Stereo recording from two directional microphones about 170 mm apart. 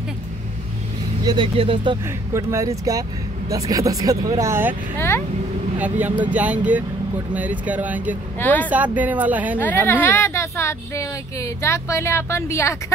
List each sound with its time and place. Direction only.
1.2 s speech: 30° right (ahead or behind)
2.3 s speech: 20° right (ahead or behind)
4.9 s speech: 15° left (ahead or behind)
5.8 s speech: 10° right (ahead or behind)
8.4 s speech: 10° left (ahead or behind)
8.6 s speech: 10° right (ahead or behind)
9.6 s speech: 10° left (ahead or behind)